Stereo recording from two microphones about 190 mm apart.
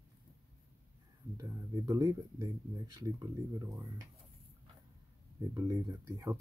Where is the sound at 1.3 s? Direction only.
15° right (ahead or behind).